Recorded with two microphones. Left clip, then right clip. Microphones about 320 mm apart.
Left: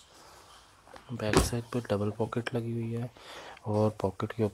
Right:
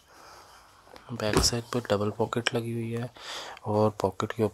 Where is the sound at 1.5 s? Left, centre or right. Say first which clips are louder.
Right 4 dB; right.